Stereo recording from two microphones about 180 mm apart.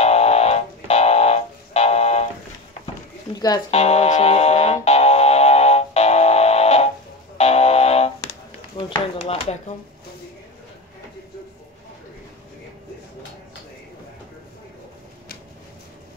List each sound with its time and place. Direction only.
0.0 s music: 35° left (ahead or behind)
3.3 s speech: 20° left (ahead or behind)
3.7 s music: 35° left (ahead or behind)